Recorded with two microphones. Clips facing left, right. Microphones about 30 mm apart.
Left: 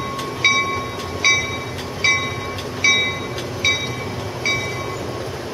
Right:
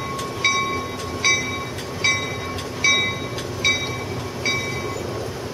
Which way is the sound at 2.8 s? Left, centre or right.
Centre.